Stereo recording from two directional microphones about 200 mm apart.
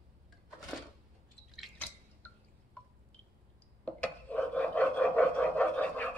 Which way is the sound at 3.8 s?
5° left (ahead or behind).